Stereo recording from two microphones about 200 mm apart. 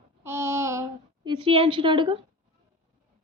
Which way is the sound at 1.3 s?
25° right (ahead or behind).